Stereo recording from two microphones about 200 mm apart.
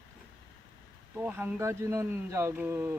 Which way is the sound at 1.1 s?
10° right (ahead or behind).